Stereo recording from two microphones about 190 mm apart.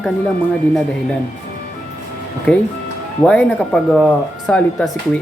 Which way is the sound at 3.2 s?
5° left (ahead or behind).